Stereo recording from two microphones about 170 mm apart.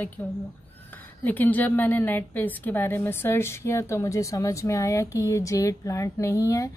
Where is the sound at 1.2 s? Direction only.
10° left (ahead or behind).